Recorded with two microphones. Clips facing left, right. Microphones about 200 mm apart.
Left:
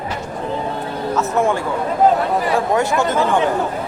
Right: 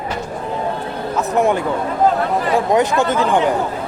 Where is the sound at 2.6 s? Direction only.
20° right (ahead or behind).